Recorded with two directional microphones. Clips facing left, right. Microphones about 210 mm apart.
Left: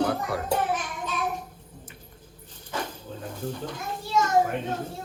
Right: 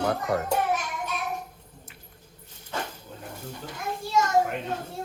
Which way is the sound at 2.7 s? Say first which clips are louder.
Left 1 dB; 10° right (ahead or behind).